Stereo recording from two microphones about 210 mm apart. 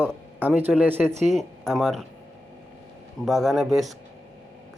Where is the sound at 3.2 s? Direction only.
Centre (ahead or behind).